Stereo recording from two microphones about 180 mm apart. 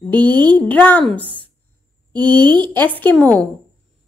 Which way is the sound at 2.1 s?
25° right (ahead or behind).